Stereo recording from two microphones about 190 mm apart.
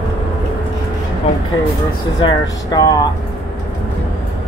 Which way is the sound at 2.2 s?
25° left (ahead or behind).